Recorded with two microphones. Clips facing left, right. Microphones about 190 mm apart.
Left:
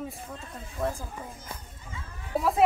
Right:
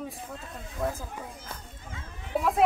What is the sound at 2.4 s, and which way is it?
Speech, centre (ahead or behind).